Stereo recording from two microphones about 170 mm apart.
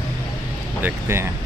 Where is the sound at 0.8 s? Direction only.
15° right (ahead or behind).